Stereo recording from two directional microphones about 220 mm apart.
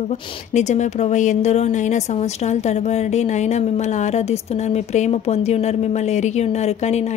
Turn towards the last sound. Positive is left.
turn(degrees=30)  # may be behind; listen again after turning